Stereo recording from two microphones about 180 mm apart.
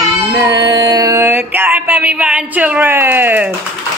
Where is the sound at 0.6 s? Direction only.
20° right (ahead or behind).